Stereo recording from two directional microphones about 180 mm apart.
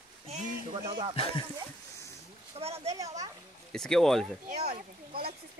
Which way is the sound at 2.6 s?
35° right (ahead or behind).